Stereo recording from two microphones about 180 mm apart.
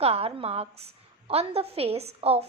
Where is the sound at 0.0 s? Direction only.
35° right (ahead or behind).